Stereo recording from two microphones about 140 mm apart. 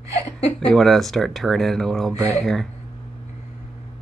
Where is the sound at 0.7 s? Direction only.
Centre (ahead or behind).